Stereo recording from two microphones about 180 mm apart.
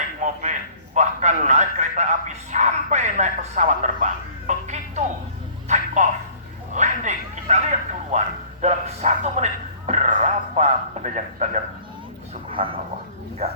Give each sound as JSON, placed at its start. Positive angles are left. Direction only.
{"t": 0.2, "sound": "a sound", "side_deg": -45}
{"t": 0.9, "sound": "a man's voice", "side_deg": -40}
{"t": 5.6, "sound": "a sound", "side_deg": -40}
{"t": 6.7, "sound": "bow-wow", "side_deg": -40}
{"t": 8.6, "sound": "speech", "side_deg": -40}
{"t": 12.6, "sound": "dog", "side_deg": -30}
{"t": 13.4, "sound": "a man's voice", "side_deg": -35}